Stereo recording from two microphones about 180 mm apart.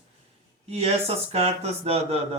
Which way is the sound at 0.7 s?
35° right (ahead or behind).